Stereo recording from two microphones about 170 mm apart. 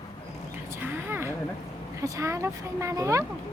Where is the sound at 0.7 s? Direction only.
15° right (ahead or behind).